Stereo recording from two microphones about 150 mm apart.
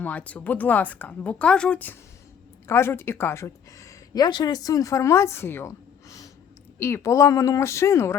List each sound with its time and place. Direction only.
0.0 s speech: 10° left (ahead or behind)